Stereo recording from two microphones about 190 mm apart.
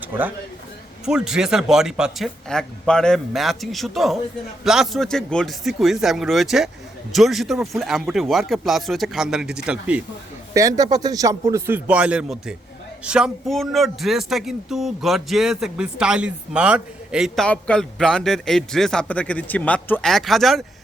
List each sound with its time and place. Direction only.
0.1 s a man's voice: 10° right (ahead or behind)
10.5 s speech: 20° right (ahead or behind); by 20.7 s centre (ahead or behind)